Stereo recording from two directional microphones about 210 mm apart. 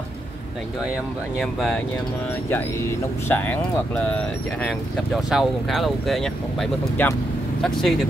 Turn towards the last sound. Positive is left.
turn(degrees=0)  # may be behind; listen again after turning